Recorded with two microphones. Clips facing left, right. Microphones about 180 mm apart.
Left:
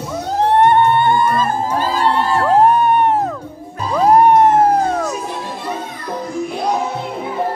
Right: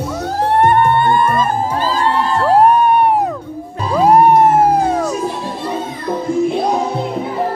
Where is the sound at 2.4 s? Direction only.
10° right (ahead or behind).